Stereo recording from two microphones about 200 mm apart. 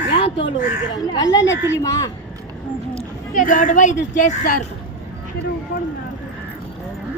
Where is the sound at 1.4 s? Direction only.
65° left (ahead or behind).